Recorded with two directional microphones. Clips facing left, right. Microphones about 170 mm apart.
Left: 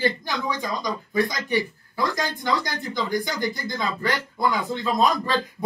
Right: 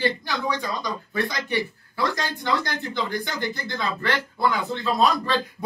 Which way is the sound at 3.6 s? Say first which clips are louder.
Left 1 dB; 15° left (ahead or behind).